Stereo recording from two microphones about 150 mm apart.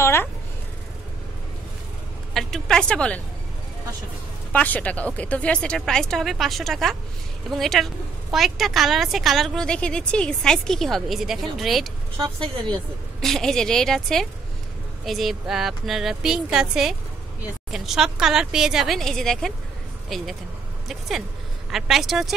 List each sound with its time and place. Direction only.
0.0 s a sound: 15° left (ahead or behind)
2.3 s a woman's voice: 5° left (ahead or behind)
4.5 s a woman's voice: 10° left (ahead or behind)
21.6 s a woman's voice: centre (ahead or behind)